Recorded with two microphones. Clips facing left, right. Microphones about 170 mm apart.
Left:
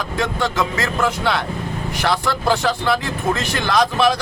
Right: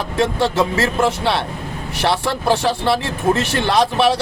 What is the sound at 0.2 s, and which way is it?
A man's voice, 30° right (ahead or behind).